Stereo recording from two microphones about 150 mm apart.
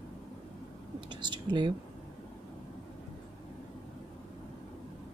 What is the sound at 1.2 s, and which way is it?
Speech, 30° right (ahead or behind).